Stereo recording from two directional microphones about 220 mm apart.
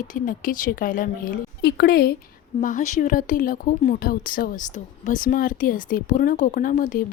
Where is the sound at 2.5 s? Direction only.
35° left (ahead or behind).